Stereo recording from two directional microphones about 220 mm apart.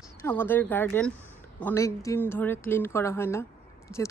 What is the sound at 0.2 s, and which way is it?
A woman's voice, 10° left (ahead or behind).